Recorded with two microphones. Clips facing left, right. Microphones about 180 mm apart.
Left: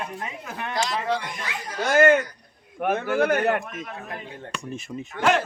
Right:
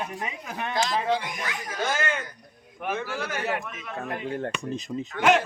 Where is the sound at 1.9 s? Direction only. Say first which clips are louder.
Left 12 dB; 55° left (ahead or behind).